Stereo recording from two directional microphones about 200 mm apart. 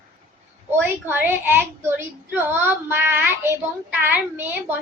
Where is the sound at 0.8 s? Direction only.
10° right (ahead or behind).